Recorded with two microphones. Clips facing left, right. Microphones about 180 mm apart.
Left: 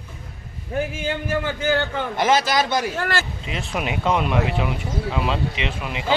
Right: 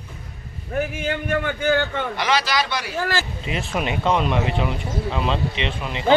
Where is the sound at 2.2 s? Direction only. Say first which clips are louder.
Left 4 dB; 45° left (ahead or behind).